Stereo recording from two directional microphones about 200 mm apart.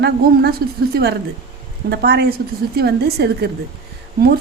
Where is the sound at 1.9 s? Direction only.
55° right (ahead or behind).